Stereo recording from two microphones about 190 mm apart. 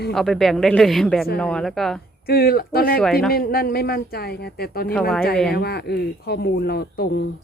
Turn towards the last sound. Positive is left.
turn(degrees=55)  # may be behind; listen again after turning